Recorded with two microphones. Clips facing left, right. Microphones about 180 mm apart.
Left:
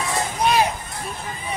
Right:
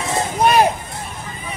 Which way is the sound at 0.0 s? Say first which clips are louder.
Right 3 dB; 25° right (ahead or behind).